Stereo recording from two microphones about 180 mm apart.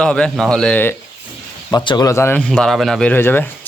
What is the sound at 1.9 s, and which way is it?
Speech, 20° left (ahead or behind).